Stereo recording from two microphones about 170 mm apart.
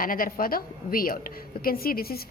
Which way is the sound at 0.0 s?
55° left (ahead or behind).